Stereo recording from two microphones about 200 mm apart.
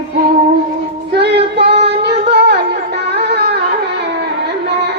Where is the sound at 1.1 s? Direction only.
55° right (ahead or behind).